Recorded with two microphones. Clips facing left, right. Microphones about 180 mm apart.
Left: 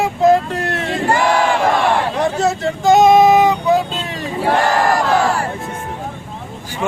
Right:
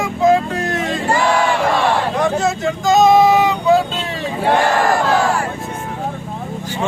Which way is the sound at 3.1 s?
20° left (ahead or behind).